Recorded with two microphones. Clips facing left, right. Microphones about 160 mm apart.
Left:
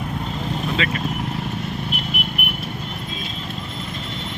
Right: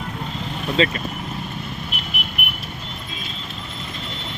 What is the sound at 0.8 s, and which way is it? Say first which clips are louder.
Speech: right 9 dB; 30° right (ahead or behind).